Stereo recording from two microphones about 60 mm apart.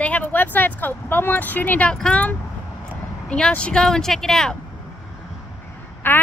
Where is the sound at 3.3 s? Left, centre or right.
Centre.